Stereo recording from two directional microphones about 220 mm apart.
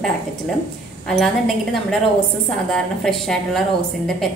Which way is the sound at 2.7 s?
Centre (ahead or behind).